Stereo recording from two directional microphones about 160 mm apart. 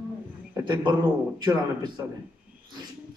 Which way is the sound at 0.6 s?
30° right (ahead or behind).